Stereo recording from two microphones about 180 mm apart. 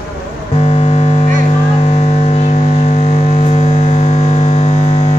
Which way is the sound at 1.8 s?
35° left (ahead or behind).